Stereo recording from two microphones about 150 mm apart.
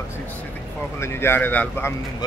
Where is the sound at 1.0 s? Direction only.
15° left (ahead or behind).